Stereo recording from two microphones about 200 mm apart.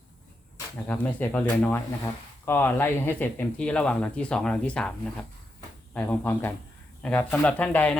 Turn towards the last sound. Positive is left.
turn(degrees=5)  # may be behind; listen again after turning